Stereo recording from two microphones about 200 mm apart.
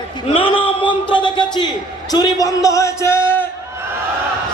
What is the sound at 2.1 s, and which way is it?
A man's voice, 20° left (ahead or behind).